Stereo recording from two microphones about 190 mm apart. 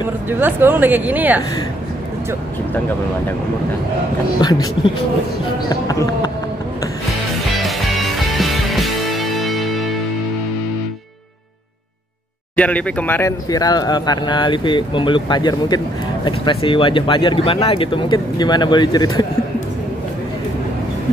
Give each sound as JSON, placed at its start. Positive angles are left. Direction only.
{"t": 0.3, "sound": "speech", "side_deg": -10}
{"t": 4.4, "sound": "speech", "side_deg": 20}
{"t": 5.7, "sound": "speech", "side_deg": 20}
{"t": 7.1, "sound": "music", "side_deg": 0}
{"t": 12.5, "sound": "speech", "side_deg": 5}